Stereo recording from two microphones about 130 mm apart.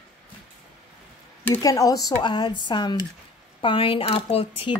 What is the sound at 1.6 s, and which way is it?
Speech, 25° left (ahead or behind).